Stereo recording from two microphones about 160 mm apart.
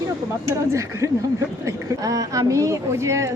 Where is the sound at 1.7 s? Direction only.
20° right (ahead or behind).